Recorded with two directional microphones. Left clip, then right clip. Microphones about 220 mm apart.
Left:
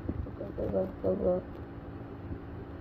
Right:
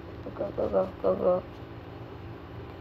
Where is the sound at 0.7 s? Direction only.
40° right (ahead or behind).